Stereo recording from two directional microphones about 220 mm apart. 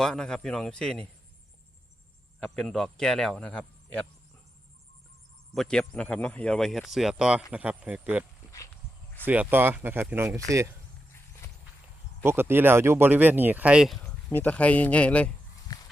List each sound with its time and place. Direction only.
0.0 s speech: centre (ahead or behind)
2.4 s speech: 5° left (ahead or behind)
5.5 s speech: 5° left (ahead or behind); by 10.4 s 10° right (ahead or behind)
12.2 s speech: 10° right (ahead or behind); by 15.3 s 5° left (ahead or behind)
15.7 s a sound: 15° left (ahead or behind)